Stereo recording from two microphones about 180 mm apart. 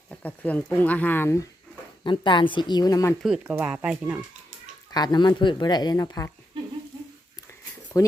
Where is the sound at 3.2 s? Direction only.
5° right (ahead or behind).